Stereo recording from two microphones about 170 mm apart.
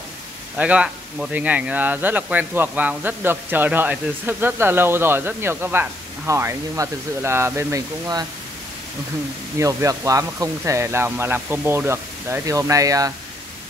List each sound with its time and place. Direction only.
0.6 s speech: 5° right (ahead or behind)
9.6 s speech: 20° right (ahead or behind)